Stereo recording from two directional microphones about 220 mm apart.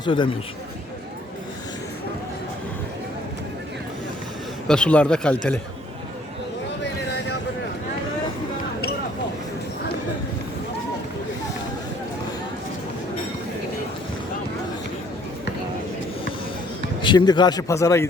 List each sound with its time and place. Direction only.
0.0 s speech: 20° left (ahead or behind)
4.7 s a man's voice: 5° left (ahead or behind)
17.0 s a man's voice: 20° left (ahead or behind)